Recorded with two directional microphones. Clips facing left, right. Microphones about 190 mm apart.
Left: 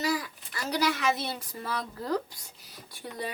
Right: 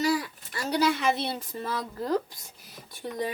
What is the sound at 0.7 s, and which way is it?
A woman's voice, 30° right (ahead or behind).